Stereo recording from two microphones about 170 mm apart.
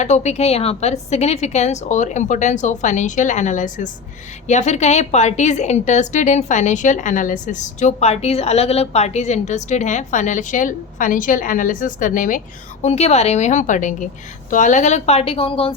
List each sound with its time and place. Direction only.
0.0 s a woman's voice: 40° left (ahead or behind)
12.8 s a woman's voice: 40° left (ahead or behind)